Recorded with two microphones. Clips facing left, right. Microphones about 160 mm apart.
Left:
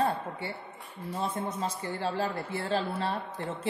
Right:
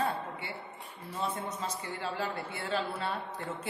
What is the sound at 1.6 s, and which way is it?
A man's voice, 35° left (ahead or behind).